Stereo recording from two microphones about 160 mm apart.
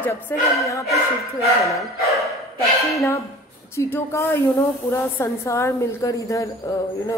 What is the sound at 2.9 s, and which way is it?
A woman's voice, 20° left (ahead or behind).